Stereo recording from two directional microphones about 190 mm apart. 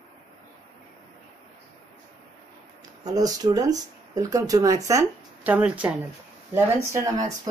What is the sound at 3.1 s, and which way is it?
Speech, 20° right (ahead or behind).